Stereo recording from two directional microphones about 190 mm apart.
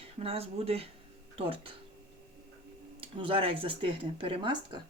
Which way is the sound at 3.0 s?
30° right (ahead or behind).